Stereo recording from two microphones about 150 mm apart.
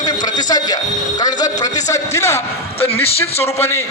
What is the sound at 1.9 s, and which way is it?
Speech, 20° left (ahead or behind).